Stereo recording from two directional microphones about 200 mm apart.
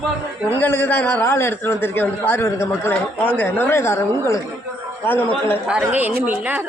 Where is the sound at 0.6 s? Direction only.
10° left (ahead or behind).